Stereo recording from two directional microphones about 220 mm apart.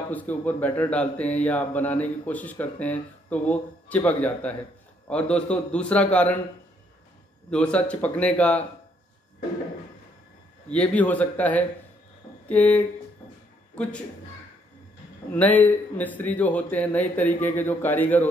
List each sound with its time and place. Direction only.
0.1 s a man's voice: 5° left (ahead or behind)
7.5 s a man's voice: 5° left (ahead or behind)
10.7 s speech: 5° left (ahead or behind)
15.3 s speech: 10° left (ahead or behind)